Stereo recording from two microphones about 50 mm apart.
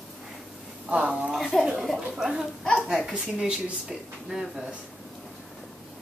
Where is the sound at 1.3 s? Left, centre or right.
Centre.